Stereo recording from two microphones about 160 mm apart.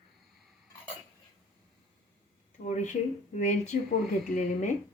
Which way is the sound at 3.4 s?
50° left (ahead or behind).